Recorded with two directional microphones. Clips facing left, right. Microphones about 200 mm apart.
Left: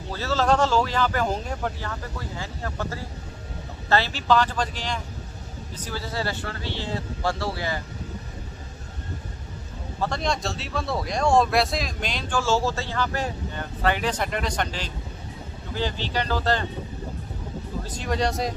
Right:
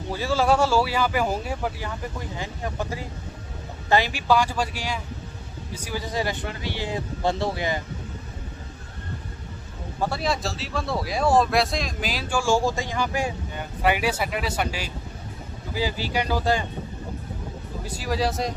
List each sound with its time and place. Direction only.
0.1 s speech: 10° right (ahead or behind)
9.9 s speech: 5° right (ahead or behind)
17.8 s speech: 5° right (ahead or behind)